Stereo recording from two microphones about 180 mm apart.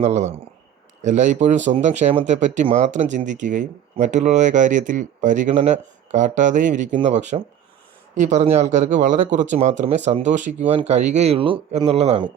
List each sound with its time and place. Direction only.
0.0 s speech: 40° right (ahead or behind)